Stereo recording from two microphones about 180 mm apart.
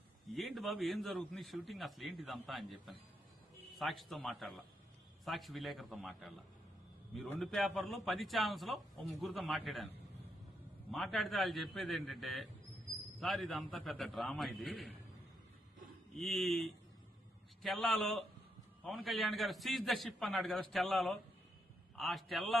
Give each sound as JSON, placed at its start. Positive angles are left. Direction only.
{"t": 0.3, "sound": "a man's voice", "side_deg": 0}
{"t": 10.9, "sound": "a man's voice", "side_deg": 0}
{"t": 16.1, "sound": "a man's voice", "side_deg": 0}